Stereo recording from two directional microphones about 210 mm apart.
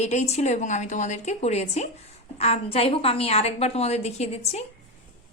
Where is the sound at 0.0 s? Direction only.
30° left (ahead or behind).